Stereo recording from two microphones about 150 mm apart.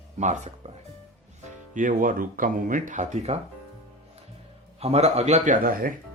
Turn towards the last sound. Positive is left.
turn(degrees=-70)  # may be behind; listen again after turning